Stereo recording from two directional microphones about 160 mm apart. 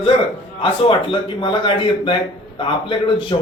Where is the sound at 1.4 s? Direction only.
30° left (ahead or behind).